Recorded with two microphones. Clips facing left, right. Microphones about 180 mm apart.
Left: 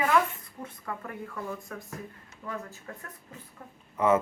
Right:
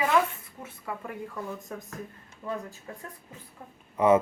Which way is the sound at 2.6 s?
15° right (ahead or behind).